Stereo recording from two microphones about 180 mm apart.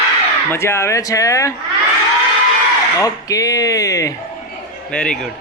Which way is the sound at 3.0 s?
20° left (ahead or behind).